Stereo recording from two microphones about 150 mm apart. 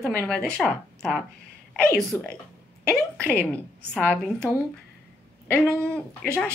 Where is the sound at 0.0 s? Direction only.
15° left (ahead or behind).